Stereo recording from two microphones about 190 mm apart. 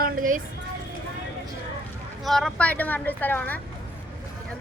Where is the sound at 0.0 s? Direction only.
45° right (ahead or behind).